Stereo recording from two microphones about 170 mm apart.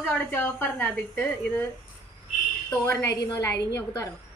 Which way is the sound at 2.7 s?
15° left (ahead or behind).